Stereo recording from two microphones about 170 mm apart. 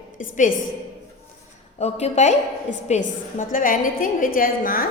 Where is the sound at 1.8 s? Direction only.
40° left (ahead or behind).